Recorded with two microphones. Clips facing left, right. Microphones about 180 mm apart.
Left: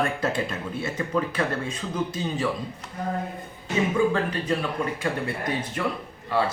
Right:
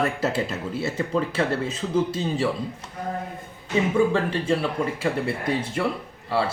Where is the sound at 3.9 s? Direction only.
25° right (ahead or behind).